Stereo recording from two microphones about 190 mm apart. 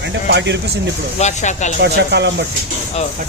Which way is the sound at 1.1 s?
40° left (ahead or behind).